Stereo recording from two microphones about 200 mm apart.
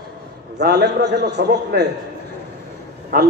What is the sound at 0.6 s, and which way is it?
A man's voice, 55° right (ahead or behind).